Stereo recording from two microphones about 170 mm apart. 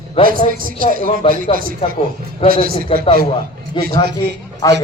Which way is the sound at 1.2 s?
30° left (ahead or behind).